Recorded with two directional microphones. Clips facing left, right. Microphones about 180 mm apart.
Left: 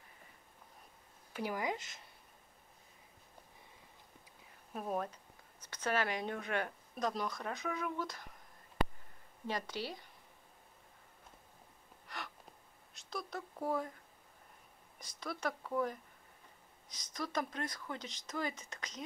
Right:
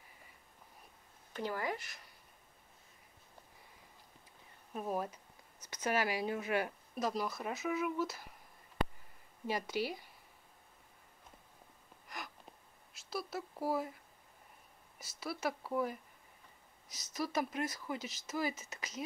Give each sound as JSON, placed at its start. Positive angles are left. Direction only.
{"t": 1.3, "sound": "speech", "side_deg": 15}
{"t": 4.7, "sound": "speech", "side_deg": -5}
{"t": 9.5, "sound": "speech", "side_deg": -10}
{"t": 12.9, "sound": "speech", "side_deg": -5}
{"t": 15.0, "sound": "speech", "side_deg": -5}